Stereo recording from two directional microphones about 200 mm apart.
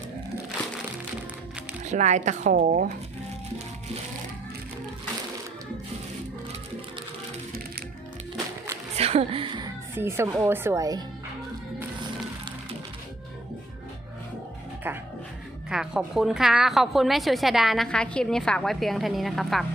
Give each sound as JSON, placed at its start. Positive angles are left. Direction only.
{"t": 1.8, "sound": "speech", "side_deg": -35}
{"t": 9.0, "sound": "a sound", "side_deg": -30}
{"t": 9.9, "sound": "speech", "side_deg": -10}
{"t": 14.8, "sound": "music", "side_deg": -10}
{"t": 15.7, "sound": "a woman's voice", "side_deg": -5}